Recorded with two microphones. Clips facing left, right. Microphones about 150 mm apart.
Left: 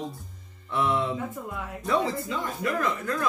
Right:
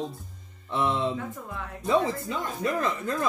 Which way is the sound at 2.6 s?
25° right (ahead or behind).